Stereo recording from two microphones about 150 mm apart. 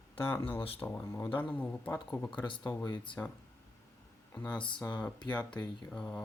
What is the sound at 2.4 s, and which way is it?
Speech, 35° left (ahead or behind).